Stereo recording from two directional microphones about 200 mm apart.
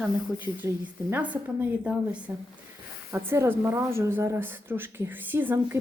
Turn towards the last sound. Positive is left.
turn(degrees=-10)  # may be behind; listen again after turning